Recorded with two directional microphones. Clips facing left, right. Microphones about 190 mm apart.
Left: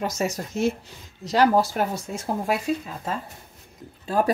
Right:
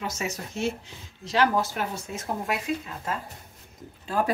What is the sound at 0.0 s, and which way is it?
Speech, 40° left (ahead or behind).